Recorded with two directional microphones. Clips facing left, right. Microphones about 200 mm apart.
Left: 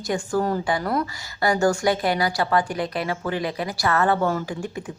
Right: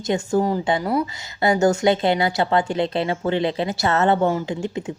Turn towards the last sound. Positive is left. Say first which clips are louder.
# right 3 dB
turn(degrees=-20)  # may be behind; listen again after turning